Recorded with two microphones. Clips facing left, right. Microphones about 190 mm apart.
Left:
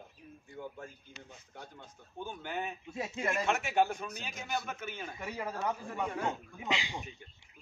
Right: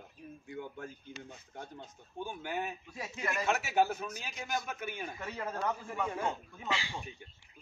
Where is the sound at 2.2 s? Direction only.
10° right (ahead or behind).